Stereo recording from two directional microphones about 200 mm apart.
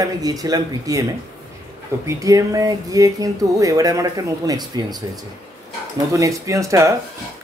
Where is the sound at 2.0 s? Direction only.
15° right (ahead or behind).